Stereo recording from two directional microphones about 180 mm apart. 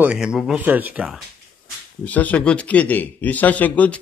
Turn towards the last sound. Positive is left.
turn(degrees=10)  # may be behind; listen again after turning